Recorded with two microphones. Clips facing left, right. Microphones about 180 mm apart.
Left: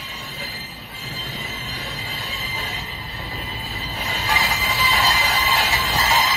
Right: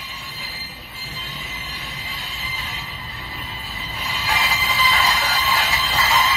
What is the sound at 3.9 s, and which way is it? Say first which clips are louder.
Train: left 1 dB; 35° left (ahead or behind).